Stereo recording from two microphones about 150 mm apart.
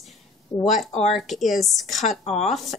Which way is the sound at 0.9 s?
45° left (ahead or behind).